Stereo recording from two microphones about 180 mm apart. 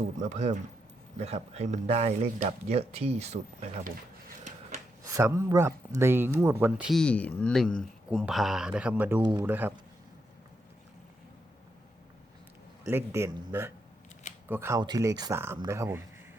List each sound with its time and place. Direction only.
0.2 s speech: 40° right (ahead or behind)
5.0 s speech: 15° right (ahead or behind)
9.2 s speech: 25° right (ahead or behind)
9.5 s speech: 10° right (ahead or behind)
12.9 s speech: 15° right (ahead or behind)